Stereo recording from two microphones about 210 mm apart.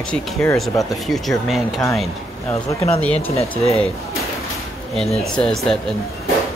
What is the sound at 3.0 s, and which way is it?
Speech, 5° left (ahead or behind).